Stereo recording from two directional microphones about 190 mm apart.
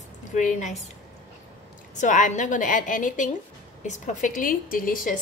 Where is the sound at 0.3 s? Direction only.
40° left (ahead or behind).